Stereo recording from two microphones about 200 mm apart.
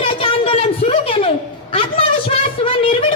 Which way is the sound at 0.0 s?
25° left (ahead or behind).